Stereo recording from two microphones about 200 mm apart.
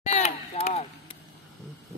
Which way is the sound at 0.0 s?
30° left (ahead or behind).